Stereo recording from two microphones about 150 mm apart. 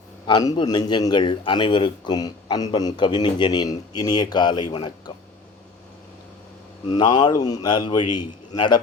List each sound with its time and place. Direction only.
0.3 s a man's voice: 30° left (ahead or behind)
6.8 s a man's voice: 30° left (ahead or behind)